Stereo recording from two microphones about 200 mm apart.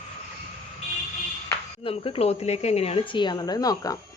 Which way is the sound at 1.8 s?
30° left (ahead or behind).